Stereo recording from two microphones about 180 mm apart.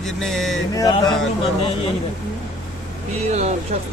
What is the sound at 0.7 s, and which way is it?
Music, 25° left (ahead or behind).